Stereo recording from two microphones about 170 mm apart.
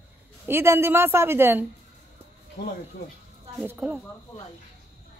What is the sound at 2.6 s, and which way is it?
Speech, 55° left (ahead or behind).